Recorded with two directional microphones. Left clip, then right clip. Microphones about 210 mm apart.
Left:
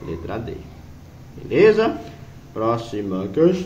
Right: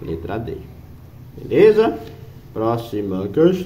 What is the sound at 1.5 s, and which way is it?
Speech, 20° right (ahead or behind).